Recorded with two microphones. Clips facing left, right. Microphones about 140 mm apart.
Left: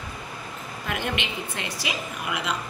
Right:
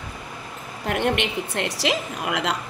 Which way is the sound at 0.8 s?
60° right (ahead or behind).